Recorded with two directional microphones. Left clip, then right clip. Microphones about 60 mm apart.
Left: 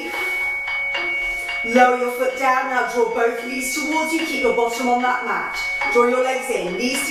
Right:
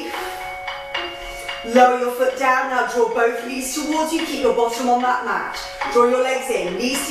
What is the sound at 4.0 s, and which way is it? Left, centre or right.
A woman's voice, centre.